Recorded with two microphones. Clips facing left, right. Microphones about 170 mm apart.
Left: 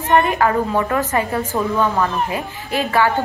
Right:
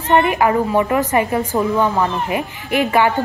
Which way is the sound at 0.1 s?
15° right (ahead or behind).